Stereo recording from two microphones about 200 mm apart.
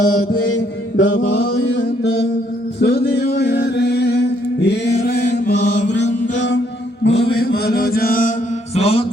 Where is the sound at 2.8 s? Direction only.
55° left (ahead or behind).